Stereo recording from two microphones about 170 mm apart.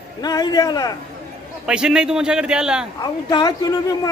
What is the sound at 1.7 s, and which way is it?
A man's voice, 5° right (ahead or behind).